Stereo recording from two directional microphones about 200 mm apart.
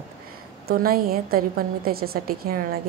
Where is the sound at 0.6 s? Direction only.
50° right (ahead or behind).